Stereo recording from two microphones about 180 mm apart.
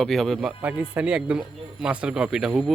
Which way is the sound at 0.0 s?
Centre (ahead or behind).